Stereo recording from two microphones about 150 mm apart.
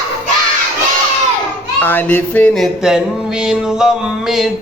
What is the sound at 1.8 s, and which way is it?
Music, 15° left (ahead or behind).